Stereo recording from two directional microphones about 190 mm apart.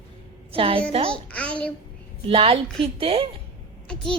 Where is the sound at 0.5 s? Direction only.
30° right (ahead or behind).